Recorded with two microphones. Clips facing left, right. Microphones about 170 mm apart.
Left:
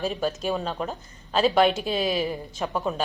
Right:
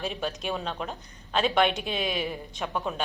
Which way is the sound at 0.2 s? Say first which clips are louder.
Left 5 dB; 5° left (ahead or behind).